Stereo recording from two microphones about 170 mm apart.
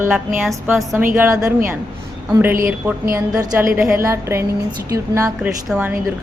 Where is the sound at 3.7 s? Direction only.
5° right (ahead or behind).